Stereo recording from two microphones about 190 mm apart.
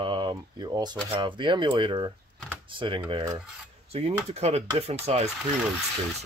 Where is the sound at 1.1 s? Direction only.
25° right (ahead or behind).